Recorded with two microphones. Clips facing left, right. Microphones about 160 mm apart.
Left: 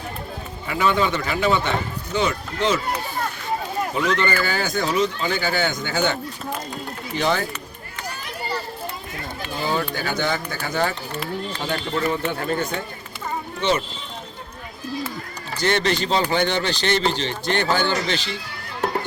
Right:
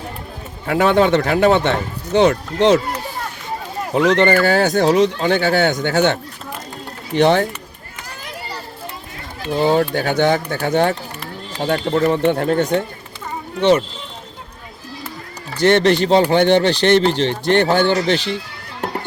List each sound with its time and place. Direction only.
0.7 s speech: 65° right (ahead or behind)
3.9 s speech: 70° right (ahead or behind)
9.5 s speech: 65° right (ahead or behind)
11.9 s speech: 75° right (ahead or behind)
13.6 s speech: 70° right (ahead or behind)
15.5 s speech: 65° right (ahead or behind)